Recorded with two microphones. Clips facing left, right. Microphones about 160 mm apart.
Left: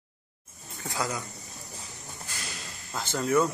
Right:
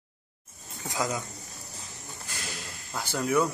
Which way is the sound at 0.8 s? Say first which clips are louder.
Right 1 dB; 15° right (ahead or behind).